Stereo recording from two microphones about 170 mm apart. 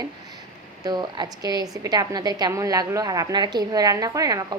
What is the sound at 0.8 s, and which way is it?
A woman's voice, 25° right (ahead or behind).